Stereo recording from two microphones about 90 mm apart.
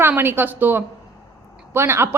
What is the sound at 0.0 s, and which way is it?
A woman's voice, 25° right (ahead or behind).